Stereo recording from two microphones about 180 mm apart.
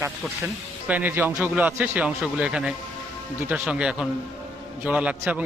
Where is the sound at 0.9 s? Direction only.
10° right (ahead or behind).